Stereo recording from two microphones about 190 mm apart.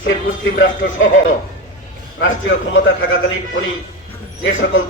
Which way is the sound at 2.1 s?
85° left.